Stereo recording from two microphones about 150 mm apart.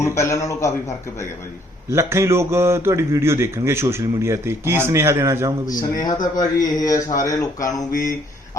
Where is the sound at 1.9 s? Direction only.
15° right (ahead or behind).